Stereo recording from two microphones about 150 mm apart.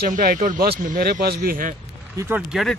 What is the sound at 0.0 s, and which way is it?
Speech, 70° right (ahead or behind).